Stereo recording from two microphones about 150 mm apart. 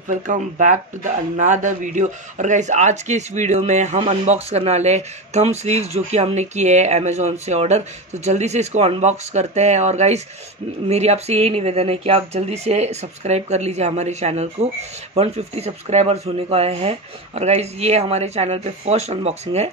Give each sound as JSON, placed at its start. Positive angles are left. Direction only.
{"t": 0.3, "sound": "speech", "side_deg": -60}